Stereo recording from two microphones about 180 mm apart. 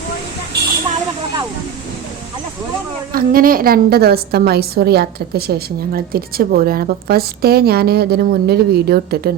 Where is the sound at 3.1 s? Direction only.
50° right (ahead or behind).